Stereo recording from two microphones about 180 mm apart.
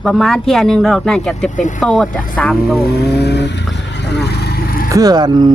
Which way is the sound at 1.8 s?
5° left (ahead or behind).